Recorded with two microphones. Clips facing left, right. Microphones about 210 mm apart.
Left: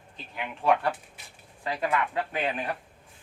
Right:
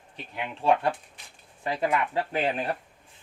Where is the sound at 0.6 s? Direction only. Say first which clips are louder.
Right 1 dB; 30° right (ahead or behind).